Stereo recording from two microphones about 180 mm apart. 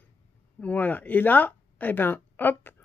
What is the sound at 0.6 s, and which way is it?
A woman's voice, 10° left (ahead or behind).